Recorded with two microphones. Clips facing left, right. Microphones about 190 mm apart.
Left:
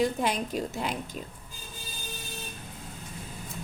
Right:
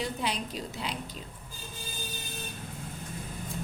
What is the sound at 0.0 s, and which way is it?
Speech, 50° left (ahead or behind).